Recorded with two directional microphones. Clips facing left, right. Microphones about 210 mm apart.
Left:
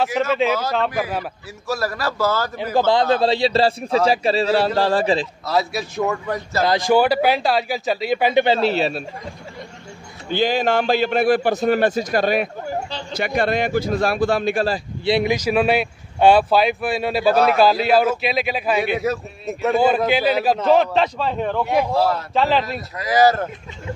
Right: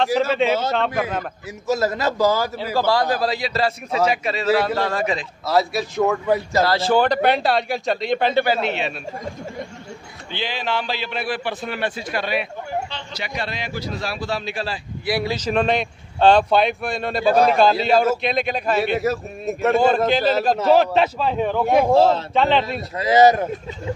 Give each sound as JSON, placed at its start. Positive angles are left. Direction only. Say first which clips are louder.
{"t": 0.3, "sound": "a man's voice", "louder": "even", "side_deg": 0}
{"t": 1.7, "sound": "a man's voice", "louder": "right 3 dB", "side_deg": -20}
{"t": 2.7, "sound": "a man's voice", "louder": "left 3 dB", "side_deg": 20}
{"t": 5.5, "sound": "a man's voice", "louder": "right 3 dB", "side_deg": 0}
{"t": 6.6, "sound": "a man's voice", "louder": "left 5 dB", "side_deg": 15}
{"t": 8.5, "sound": "a man's voice", "louder": "left 4 dB", "side_deg": 35}
{"t": 10.3, "sound": "a man's voice", "louder": "left 7 dB", "side_deg": 45}
{"t": 15.0, "sound": "speech", "louder": "left 4 dB", "side_deg": 20}
{"t": 15.3, "sound": "a man's voice", "louder": "left 2 dB", "side_deg": 10}
{"t": 21.6, "sound": "speech", "louder": "right 5 dB", "side_deg": -50}
{"t": 21.9, "sound": "a man's voice", "louder": "right 4 dB", "side_deg": -25}
{"t": 22.3, "sound": "a man's voice", "louder": "even", "side_deg": 0}
{"t": 22.9, "sound": "a man's voice", "louder": "right 2 dB", "side_deg": -25}